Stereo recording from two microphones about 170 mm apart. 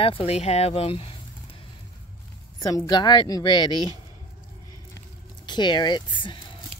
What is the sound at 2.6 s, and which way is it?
A woman's voice, 20° left (ahead or behind).